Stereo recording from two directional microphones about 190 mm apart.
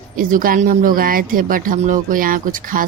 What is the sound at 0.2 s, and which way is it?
Speech, 45° right (ahead or behind).